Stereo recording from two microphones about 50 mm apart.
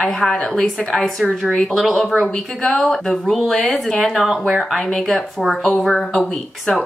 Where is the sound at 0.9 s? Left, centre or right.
Centre.